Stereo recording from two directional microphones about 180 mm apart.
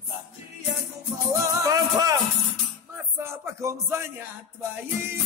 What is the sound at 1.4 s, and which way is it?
Music, 20° right (ahead or behind).